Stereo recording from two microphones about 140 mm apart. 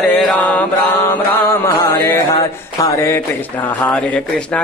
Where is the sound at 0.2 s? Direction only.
10° left (ahead or behind).